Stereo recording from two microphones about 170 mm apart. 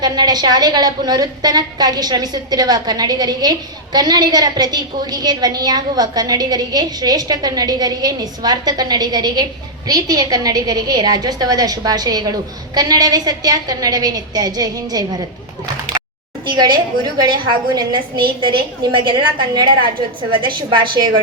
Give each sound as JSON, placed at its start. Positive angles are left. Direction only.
{"t": 0.0, "sound": "a woman's voice", "side_deg": -25}
{"t": 16.6, "sound": "a woman's voice", "side_deg": -25}